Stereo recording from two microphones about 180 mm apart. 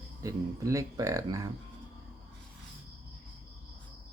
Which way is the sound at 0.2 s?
20° right (ahead or behind).